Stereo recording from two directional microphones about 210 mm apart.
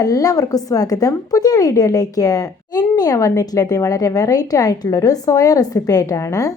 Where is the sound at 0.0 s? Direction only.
15° left (ahead or behind).